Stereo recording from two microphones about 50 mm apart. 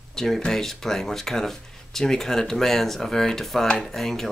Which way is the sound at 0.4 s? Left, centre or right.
Centre.